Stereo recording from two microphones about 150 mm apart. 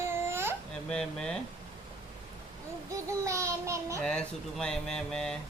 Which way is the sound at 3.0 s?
20° right (ahead or behind).